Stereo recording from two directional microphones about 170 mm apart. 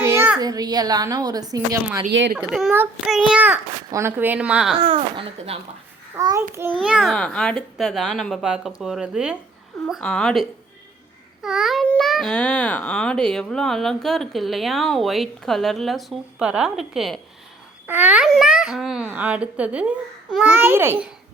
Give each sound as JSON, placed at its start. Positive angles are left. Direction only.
{"t": 0.0, "sound": "a child's voice", "side_deg": -15}
{"t": 2.4, "sound": "a child's voice", "side_deg": -5}
{"t": 4.8, "sound": "speech", "side_deg": -30}
{"t": 6.1, "sound": "a child's voice", "side_deg": -20}
{"t": 6.7, "sound": "a child's voice", "side_deg": -5}
{"t": 11.4, "sound": "a child's voice", "side_deg": -5}